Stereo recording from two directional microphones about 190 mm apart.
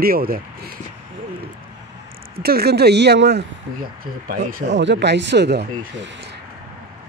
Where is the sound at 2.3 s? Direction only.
55° right (ahead or behind).